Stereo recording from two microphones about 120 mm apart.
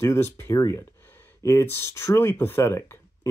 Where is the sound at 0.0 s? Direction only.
20° left (ahead or behind).